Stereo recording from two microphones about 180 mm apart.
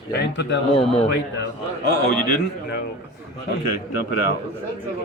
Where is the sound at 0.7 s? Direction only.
35° left (ahead or behind).